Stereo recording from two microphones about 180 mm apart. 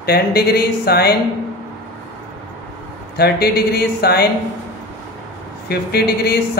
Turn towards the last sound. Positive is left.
turn(degrees=60)  # may be behind; listen again after turning